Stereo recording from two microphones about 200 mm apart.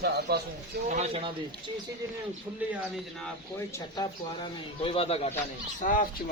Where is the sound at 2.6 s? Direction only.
10° right (ahead or behind).